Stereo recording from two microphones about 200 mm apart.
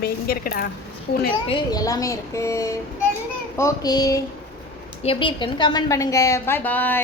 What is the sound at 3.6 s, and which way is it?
Child singing, 20° left (ahead or behind).